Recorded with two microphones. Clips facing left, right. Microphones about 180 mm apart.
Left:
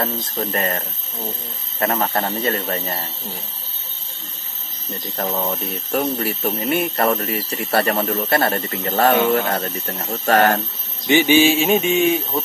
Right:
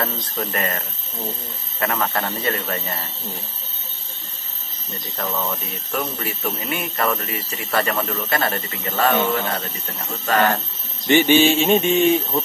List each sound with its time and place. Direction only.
0.4 s speech: 30° left (ahead or behind)
2.1 s speech: 25° left (ahead or behind)
5.1 s speech: 35° left (ahead or behind)
11.1 s speech: 10° left (ahead or behind)